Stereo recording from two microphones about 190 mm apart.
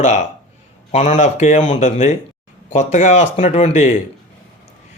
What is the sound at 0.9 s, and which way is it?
Speech, 35° left (ahead or behind).